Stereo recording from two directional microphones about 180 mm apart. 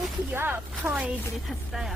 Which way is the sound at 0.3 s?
10° right (ahead or behind).